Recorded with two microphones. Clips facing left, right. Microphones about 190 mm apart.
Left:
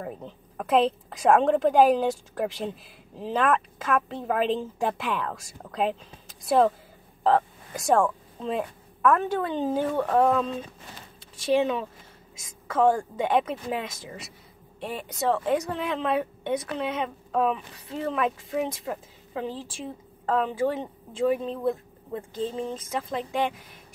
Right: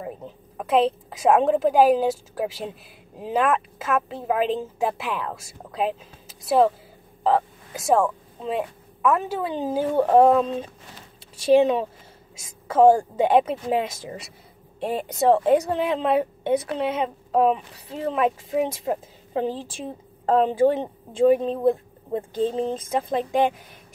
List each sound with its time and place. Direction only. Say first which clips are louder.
0.0 s a woman's voice: right 2 dB; 5° right (ahead or behind)
9.9 s speech: right 8 dB; 30° right (ahead or behind)
12.6 s a woman's voice: right 6 dB; 30° right (ahead or behind)
14.8 s speech: right 7 dB; 45° right (ahead or behind)
15.1 s a woman's voice: right 7 dB; 30° right (ahead or behind)